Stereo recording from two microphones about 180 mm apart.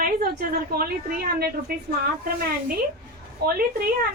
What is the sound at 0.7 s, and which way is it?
Speech, 60° right (ahead or behind).